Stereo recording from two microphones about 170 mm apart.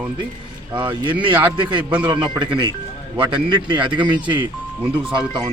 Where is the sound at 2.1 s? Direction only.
25° right (ahead or behind).